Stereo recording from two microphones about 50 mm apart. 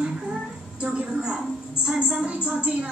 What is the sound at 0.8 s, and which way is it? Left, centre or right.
A woman's voice, centre.